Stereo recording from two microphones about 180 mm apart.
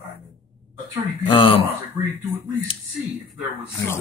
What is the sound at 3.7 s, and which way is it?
Speech, 15° left (ahead or behind).